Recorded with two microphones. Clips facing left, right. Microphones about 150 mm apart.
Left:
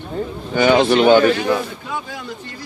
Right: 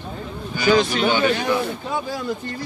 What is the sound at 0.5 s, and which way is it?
Speech, 65° left (ahead or behind).